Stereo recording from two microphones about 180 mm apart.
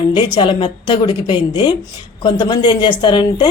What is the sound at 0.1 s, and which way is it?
A woman's voice, 25° left (ahead or behind).